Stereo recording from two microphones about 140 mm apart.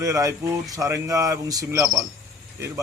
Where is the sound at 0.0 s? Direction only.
20° right (ahead or behind).